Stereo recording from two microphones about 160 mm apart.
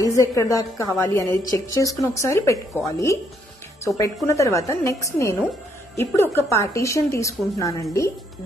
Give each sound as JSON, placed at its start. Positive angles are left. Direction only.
{"t": 0.0, "sound": "a woman's voice", "side_deg": 20}